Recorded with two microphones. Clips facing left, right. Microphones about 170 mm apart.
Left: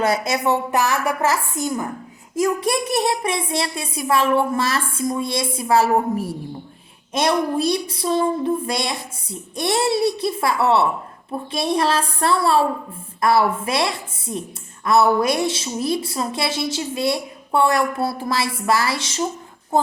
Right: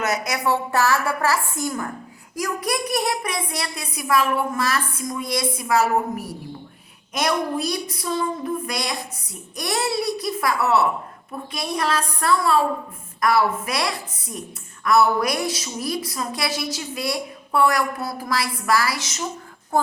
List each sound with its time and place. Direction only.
0.0 s a woman's voice: 30° left (ahead or behind)